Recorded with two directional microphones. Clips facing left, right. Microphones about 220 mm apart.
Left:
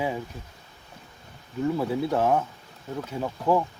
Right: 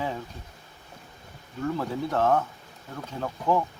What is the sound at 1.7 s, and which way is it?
Speech, 10° left (ahead or behind).